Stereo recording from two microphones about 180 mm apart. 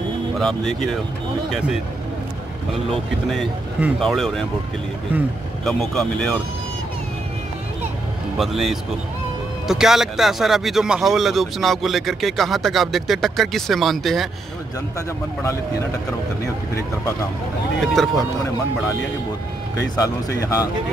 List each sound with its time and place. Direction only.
0.4 s speech: 5° left (ahead or behind)
3.3 s speech: centre (ahead or behind)
5.7 s speech: 5° left (ahead or behind)
8.4 s speech: centre (ahead or behind)
17.7 s speech: centre (ahead or behind)
19.8 s speech: 20° left (ahead or behind)